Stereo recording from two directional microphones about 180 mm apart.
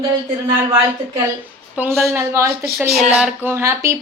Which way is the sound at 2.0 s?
15° right (ahead or behind).